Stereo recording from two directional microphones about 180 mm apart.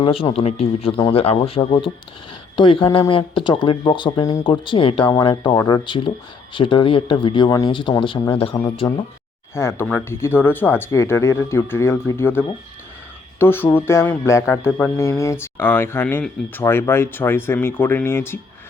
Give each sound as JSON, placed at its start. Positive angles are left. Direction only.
{"t": 0.0, "sound": "speech", "side_deg": 30}
{"t": 9.6, "sound": "speech", "side_deg": 15}